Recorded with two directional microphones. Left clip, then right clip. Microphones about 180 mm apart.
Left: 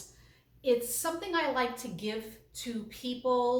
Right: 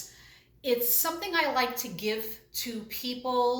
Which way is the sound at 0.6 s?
15° left (ahead or behind).